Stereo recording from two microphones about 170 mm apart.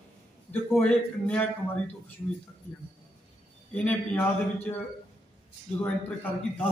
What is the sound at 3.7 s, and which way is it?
Speech, 10° left (ahead or behind).